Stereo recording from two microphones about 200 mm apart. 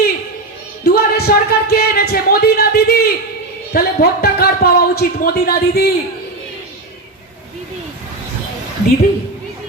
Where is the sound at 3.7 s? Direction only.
50° left (ahead or behind).